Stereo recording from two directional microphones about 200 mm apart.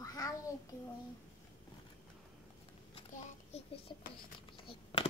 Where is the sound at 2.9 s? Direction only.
35° left (ahead or behind).